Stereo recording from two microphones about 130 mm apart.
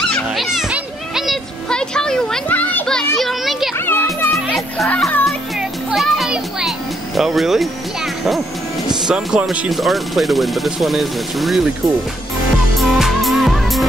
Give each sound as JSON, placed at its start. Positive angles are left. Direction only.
{"t": 0.1, "sound": "a sound", "side_deg": 0}
{"t": 3.7, "sound": "music", "side_deg": 15}
{"t": 7.2, "sound": "speech", "side_deg": 0}
{"t": 12.7, "sound": "music", "side_deg": 0}